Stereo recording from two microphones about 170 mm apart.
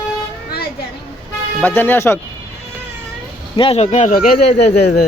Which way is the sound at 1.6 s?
10° left (ahead or behind).